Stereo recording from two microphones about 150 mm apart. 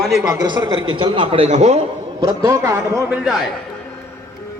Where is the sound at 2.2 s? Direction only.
20° right (ahead or behind).